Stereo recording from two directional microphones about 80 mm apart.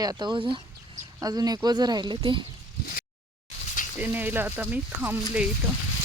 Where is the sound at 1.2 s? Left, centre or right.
Right.